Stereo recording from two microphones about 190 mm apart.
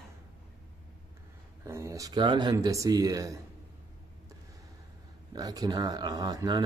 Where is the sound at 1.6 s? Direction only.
15° right (ahead or behind).